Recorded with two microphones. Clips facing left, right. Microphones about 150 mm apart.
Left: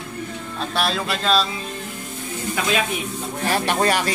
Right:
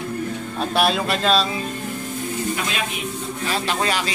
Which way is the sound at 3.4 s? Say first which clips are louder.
Left 4 dB; 60° left (ahead or behind).